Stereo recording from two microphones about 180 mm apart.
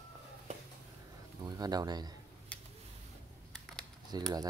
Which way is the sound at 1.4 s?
20° right (ahead or behind).